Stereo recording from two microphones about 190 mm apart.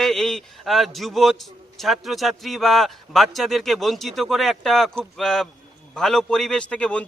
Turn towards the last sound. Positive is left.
turn(degrees=5)  # may be behind; listen again after turning